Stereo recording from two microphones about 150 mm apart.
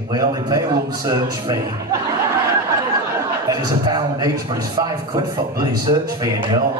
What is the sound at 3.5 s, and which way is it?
A man's voice, 25° right (ahead or behind).